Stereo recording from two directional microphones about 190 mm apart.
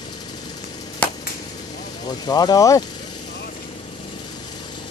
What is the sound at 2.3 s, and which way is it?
Speech, 20° left (ahead or behind).